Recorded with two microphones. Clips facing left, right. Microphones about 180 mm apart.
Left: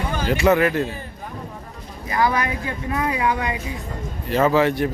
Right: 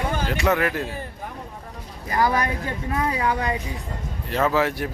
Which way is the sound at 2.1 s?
40° right (ahead or behind).